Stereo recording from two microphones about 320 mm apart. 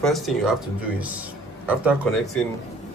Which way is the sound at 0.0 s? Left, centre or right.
Centre.